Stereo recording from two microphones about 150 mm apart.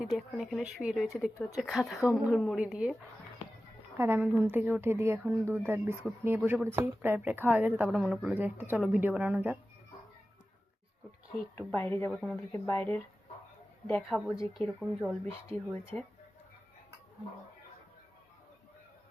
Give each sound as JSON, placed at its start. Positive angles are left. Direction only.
{"t": 0.0, "sound": "speech", "side_deg": -5}
{"t": 3.9, "sound": "speech", "side_deg": -15}
{"t": 11.5, "sound": "speech", "side_deg": 15}
{"t": 12.1, "sound": "speech", "side_deg": 0}
{"t": 12.5, "sound": "speech", "side_deg": 20}
{"t": 15.4, "sound": "speech", "side_deg": 20}